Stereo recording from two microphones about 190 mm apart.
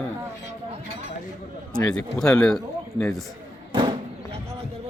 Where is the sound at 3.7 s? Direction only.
25° right (ahead or behind).